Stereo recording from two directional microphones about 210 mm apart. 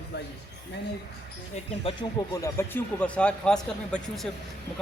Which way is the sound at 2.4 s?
10° left (ahead or behind).